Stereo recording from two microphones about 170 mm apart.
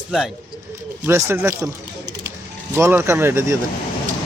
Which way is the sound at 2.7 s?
10° right (ahead or behind).